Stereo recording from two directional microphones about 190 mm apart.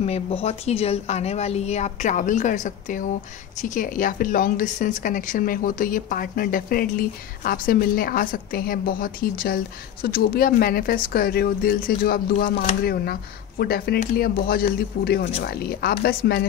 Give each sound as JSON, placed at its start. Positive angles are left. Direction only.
{"t": 0.0, "sound": "a woman's voice", "side_deg": 35}